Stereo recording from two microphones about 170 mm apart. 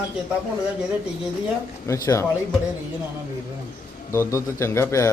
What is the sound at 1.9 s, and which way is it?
Speech, 20° left (ahead or behind).